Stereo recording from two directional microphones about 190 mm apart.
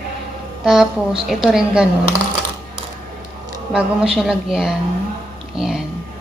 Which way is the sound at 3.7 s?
5° right (ahead or behind).